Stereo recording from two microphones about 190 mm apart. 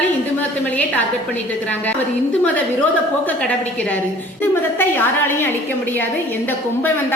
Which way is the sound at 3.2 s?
5° left (ahead or behind).